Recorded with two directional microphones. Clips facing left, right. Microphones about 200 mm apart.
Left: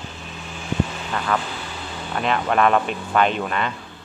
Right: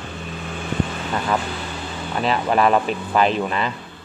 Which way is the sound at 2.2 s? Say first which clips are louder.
Right 1 dB; 5° right (ahead or behind).